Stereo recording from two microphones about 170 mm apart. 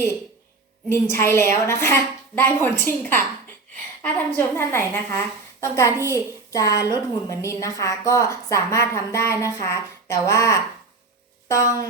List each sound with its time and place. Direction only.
0.9 s a woman's voice: 15° left (ahead or behind)
4.4 s a woman's voice: 15° left (ahead or behind)